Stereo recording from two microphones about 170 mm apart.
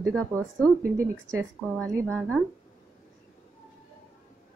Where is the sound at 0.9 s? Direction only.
15° right (ahead or behind).